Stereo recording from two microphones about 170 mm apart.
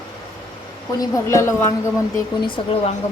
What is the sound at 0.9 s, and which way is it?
Speech, 20° left (ahead or behind).